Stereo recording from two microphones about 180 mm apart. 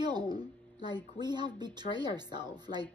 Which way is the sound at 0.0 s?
25° right (ahead or behind).